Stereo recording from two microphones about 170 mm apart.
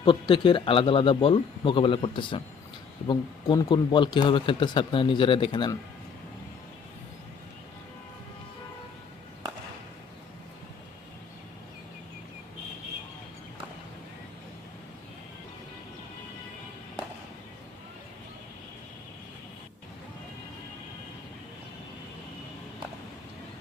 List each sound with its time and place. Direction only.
0.0 s speech: 30° left (ahead or behind)